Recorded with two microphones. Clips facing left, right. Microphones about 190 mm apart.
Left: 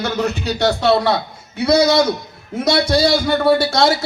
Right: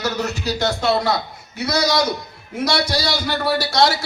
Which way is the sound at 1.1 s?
65° left (ahead or behind).